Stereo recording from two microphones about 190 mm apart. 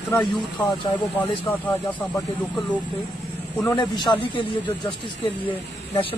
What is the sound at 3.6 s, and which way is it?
Speech, 20° left (ahead or behind).